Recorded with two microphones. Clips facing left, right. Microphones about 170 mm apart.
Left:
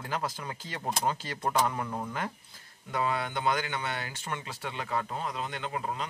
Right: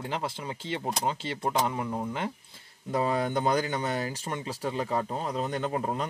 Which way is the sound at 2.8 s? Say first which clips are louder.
Right 4 dB; 35° right (ahead or behind).